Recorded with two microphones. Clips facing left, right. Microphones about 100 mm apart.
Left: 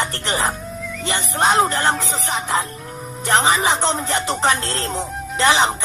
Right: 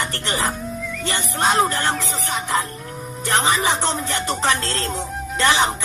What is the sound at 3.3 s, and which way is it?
Speech, 25° left (ahead or behind).